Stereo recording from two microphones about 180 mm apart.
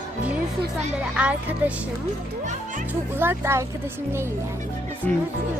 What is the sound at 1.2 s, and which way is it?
Speech, 10° right (ahead or behind).